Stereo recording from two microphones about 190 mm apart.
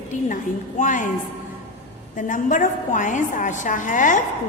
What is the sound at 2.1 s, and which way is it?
A woman's voice, 45° left (ahead or behind).